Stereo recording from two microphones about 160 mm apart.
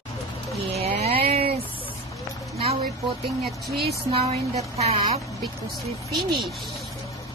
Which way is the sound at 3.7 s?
80° right.